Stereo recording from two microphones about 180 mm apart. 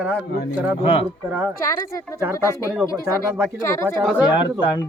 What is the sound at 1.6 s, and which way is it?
Speech, 20° left (ahead or behind).